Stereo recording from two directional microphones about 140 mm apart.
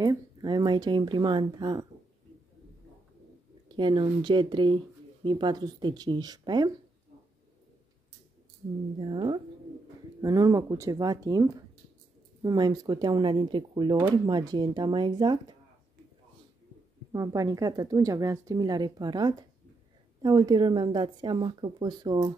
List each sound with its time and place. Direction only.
0.0 s speech: 30° right (ahead or behind)
3.6 s speech: 35° right (ahead or behind)
9.0 s a woman's voice: 35° right (ahead or behind)
17.1 s a woman's voice: 25° right (ahead or behind)